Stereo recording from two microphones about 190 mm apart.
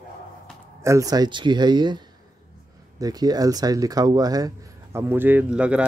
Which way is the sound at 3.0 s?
20° right (ahead or behind).